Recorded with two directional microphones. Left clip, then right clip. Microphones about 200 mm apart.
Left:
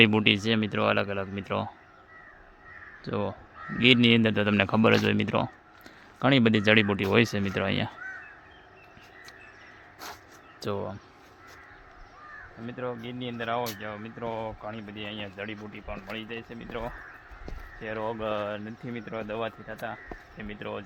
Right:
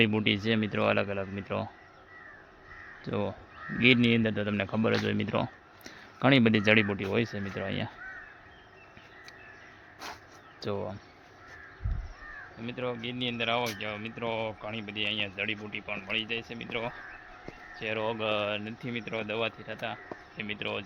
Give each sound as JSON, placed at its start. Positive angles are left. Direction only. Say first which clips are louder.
{"t": 0.0, "sound": "speech", "louder": "left 5 dB", "side_deg": 15}
{"t": 3.0, "sound": "speech", "louder": "left 2 dB", "side_deg": 5}
{"t": 5.8, "sound": "speech", "louder": "left 1 dB", "side_deg": 5}
{"t": 10.6, "sound": "speech", "louder": "left 2 dB", "side_deg": 10}
{"t": 12.6, "sound": "speech", "louder": "right 1 dB", "side_deg": 0}